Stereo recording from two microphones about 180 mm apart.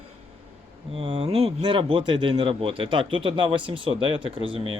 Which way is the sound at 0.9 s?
30° right (ahead or behind).